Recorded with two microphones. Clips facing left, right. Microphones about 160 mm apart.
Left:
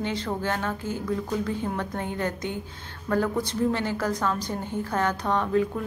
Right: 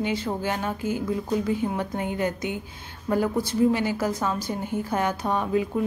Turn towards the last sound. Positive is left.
turn(degrees=-10)  # may be behind; listen again after turning